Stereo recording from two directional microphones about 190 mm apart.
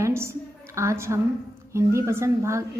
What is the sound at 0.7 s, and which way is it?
A woman's voice, 15° right (ahead or behind).